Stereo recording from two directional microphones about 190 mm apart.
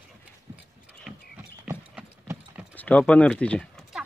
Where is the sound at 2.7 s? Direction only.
5° left (ahead or behind).